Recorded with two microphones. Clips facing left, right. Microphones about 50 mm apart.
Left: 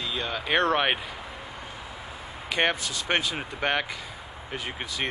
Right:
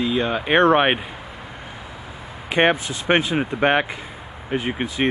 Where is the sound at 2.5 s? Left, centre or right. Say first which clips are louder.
Right 7 dB; right.